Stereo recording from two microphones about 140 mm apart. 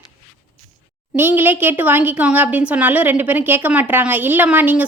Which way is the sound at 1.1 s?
15° right (ahead or behind).